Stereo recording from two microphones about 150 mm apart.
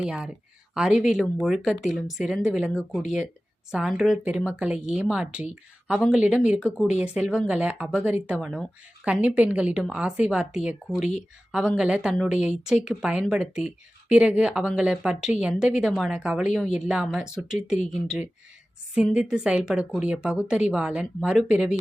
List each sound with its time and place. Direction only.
0.0 s a woman's voice: 5° right (ahead or behind)